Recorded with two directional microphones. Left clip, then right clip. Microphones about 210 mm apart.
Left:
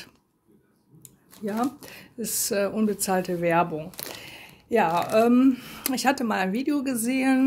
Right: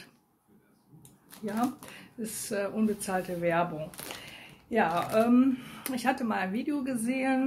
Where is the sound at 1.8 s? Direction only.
55° left (ahead or behind).